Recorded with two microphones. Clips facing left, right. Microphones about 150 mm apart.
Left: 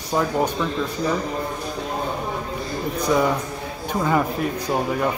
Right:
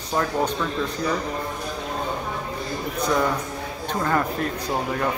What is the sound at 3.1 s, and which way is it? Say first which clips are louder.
Speech: left 3 dB; 10° left (ahead or behind).